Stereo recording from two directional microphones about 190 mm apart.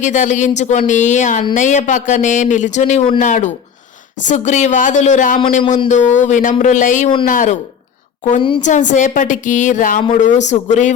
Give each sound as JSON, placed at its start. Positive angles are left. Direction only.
{"t": 0.0, "sound": "speech", "side_deg": 40}
{"t": 8.4, "sound": "a woman's voice", "side_deg": 25}
{"t": 8.6, "sound": "speech", "side_deg": 40}